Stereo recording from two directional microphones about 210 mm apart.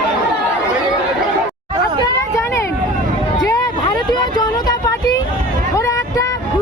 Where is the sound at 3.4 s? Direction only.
20° left (ahead or behind).